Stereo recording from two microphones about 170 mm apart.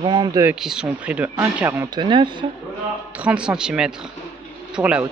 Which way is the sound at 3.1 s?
5° right (ahead or behind).